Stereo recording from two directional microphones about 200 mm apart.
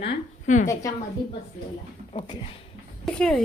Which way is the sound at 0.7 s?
15° left (ahead or behind).